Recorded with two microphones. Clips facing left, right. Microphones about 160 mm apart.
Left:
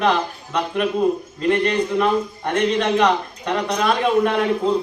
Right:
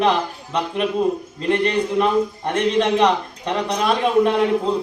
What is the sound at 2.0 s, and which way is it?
A man's voice, 30° right (ahead or behind).